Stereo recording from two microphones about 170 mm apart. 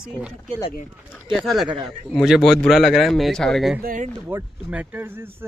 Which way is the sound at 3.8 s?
55° right (ahead or behind).